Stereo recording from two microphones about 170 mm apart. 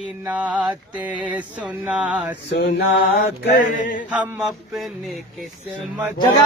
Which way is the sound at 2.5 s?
90° left.